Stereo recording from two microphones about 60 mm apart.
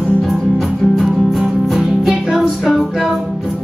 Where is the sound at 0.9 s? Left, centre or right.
Centre.